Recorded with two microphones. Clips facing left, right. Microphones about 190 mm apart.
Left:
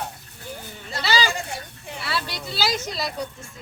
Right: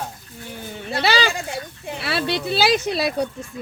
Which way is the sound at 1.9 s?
60° right (ahead or behind).